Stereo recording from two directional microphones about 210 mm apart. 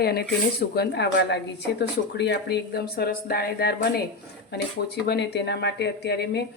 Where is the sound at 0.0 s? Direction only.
50° left (ahead or behind).